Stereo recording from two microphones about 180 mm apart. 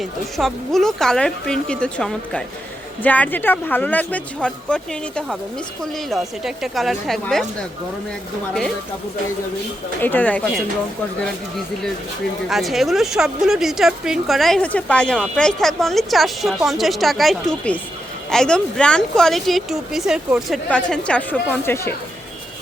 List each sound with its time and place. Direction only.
0.0 s speech: centre (ahead or behind)
10.0 s speech: 10° left (ahead or behind)
12.5 s speech: centre (ahead or behind)